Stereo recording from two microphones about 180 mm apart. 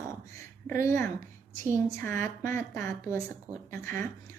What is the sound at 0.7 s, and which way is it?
A woman's voice, 15° left (ahead or behind).